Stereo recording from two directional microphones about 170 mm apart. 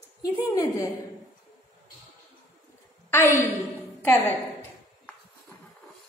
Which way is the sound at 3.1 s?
15° left (ahead or behind).